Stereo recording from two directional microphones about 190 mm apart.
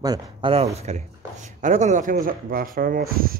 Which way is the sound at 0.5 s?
35° right (ahead or behind).